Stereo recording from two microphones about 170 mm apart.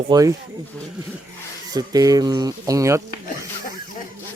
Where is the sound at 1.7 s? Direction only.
20° right (ahead or behind).